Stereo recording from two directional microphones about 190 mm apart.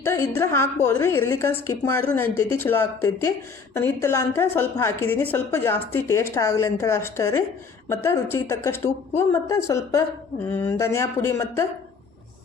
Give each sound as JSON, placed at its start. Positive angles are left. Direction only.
{"t": 0.0, "sound": "a woman's voice", "side_deg": 15}